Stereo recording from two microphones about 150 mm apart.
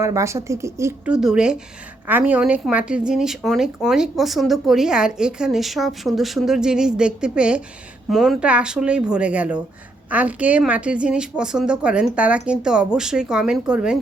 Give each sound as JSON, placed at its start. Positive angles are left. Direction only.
{"t": 0.0, "sound": "speech", "side_deg": -20}
{"t": 1.0, "sound": "a woman's voice", "side_deg": -5}